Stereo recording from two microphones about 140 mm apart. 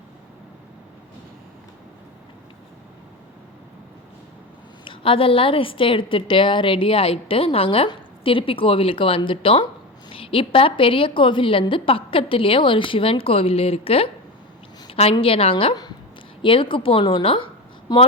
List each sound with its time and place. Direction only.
4.9 s a woman's voice: 40° left (ahead or behind)
14.8 s a sound: 45° left (ahead or behind)
15.1 s a woman's voice: 40° left (ahead or behind)